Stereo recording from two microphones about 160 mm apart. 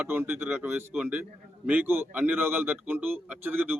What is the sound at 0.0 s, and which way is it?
A man's voice, 10° right (ahead or behind).